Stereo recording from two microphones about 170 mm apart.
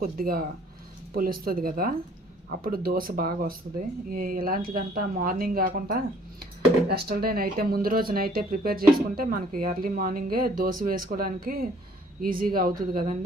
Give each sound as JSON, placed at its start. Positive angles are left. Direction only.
{"t": 0.0, "sound": "speech", "side_deg": -60}
{"t": 6.4, "sound": "speech", "side_deg": -65}